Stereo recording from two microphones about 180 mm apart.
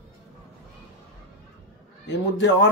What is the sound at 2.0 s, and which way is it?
Speech, 80° left.